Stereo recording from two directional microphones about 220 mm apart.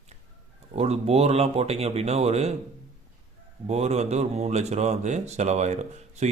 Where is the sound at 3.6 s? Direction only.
30° right (ahead or behind).